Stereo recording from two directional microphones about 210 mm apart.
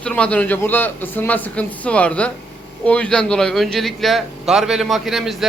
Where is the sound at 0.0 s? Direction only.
5° left (ahead or behind).